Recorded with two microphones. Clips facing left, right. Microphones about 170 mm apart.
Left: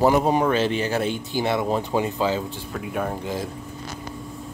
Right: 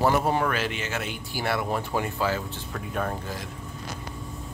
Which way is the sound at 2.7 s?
5° left (ahead or behind).